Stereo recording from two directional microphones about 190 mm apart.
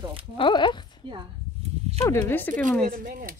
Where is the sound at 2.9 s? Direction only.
45° right (ahead or behind).